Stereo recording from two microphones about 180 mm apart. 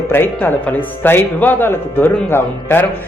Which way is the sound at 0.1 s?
10° left (ahead or behind).